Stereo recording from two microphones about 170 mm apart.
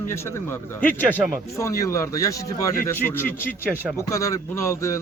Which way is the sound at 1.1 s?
10° right (ahead or behind).